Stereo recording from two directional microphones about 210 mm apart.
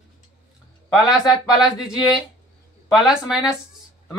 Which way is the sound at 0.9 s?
Centre (ahead or behind).